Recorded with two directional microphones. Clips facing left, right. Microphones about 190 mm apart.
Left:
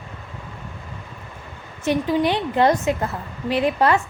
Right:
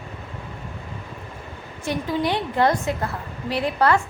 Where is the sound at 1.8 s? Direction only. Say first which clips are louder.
Left 4 dB; 20° left (ahead or behind).